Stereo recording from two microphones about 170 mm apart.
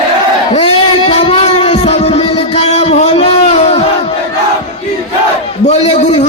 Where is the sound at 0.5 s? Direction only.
35° left (ahead or behind).